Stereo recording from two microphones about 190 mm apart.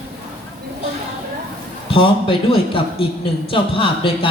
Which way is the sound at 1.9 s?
30° left (ahead or behind).